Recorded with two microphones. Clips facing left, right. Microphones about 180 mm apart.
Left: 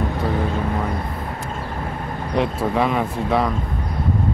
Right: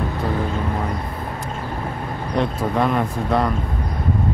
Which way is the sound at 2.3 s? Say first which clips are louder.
Left 1 dB; centre (ahead or behind).